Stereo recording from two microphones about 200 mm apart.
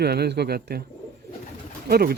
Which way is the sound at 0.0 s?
55° right (ahead or behind).